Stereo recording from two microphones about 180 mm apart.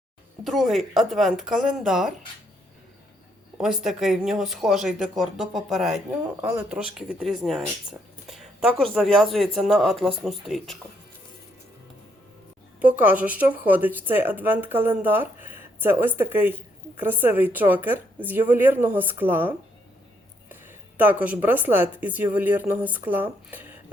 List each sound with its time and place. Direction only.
0.4 s speech: centre (ahead or behind)
3.6 s speech: centre (ahead or behind)
12.8 s speech: 10° right (ahead or behind)
21.0 s speech: 10° right (ahead or behind)